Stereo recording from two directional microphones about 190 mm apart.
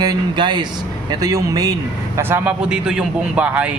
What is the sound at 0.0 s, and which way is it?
Speech, 20° right (ahead or behind).